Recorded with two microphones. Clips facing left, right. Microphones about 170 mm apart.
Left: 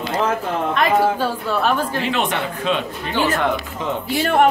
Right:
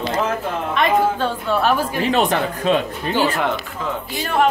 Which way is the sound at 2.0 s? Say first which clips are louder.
Right 4 dB; 35° right (ahead or behind).